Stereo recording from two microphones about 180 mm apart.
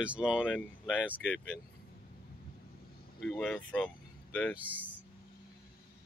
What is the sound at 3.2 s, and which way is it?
Speech, 5° left (ahead or behind).